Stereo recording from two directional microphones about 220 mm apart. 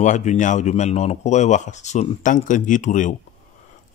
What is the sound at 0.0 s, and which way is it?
Speech, 35° left (ahead or behind).